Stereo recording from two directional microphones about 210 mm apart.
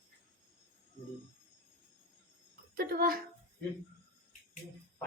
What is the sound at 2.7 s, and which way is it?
Speech, 45° right (ahead or behind).